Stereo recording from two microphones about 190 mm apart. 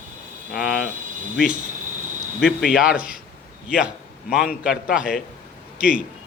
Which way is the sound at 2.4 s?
5° right (ahead or behind).